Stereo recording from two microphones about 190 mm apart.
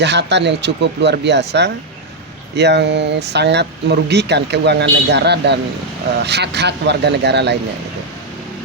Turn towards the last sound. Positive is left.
turn(degrees=-65)  # may be behind; listen again after turning